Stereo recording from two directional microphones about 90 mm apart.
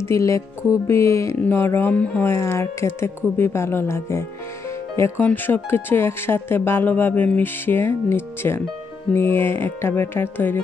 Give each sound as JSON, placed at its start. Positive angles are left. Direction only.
{"t": 0.0, "sound": "music", "side_deg": 35}
{"t": 1.4, "sound": "speech", "side_deg": 25}